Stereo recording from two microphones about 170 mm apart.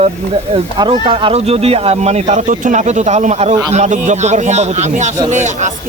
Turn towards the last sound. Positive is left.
turn(degrees=-45)  # may be behind; listen again after turning